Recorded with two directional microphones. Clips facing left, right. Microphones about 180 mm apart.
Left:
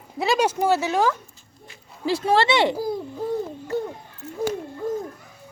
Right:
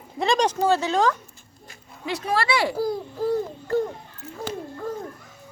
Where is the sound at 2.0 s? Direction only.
30° left (ahead or behind).